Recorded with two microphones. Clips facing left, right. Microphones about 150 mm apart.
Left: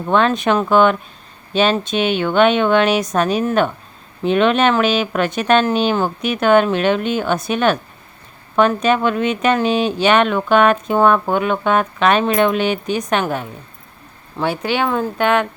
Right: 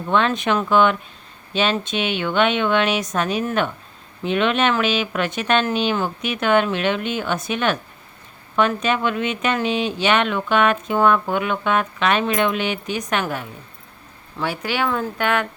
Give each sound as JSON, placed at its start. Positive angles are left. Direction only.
{"t": 0.1, "sound": "speech", "side_deg": 40}